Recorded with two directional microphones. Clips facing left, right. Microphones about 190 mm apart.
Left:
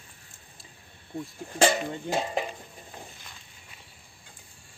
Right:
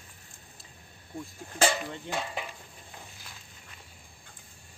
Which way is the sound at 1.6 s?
35° left (ahead or behind).